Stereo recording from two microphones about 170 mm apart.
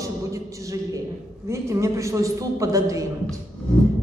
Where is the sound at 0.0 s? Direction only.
20° right (ahead or behind).